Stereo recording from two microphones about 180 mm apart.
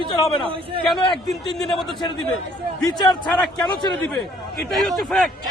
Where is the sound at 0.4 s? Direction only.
30° right (ahead or behind).